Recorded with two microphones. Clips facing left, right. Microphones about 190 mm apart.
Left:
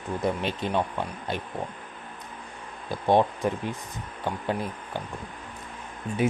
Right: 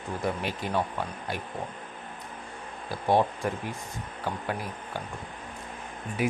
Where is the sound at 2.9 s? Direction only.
20° left (ahead or behind).